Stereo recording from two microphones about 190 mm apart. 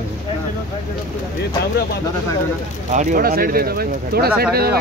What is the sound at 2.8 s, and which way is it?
Speech, 45° right (ahead or behind).